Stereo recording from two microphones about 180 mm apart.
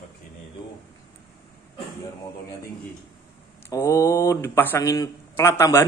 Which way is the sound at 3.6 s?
15° left (ahead or behind).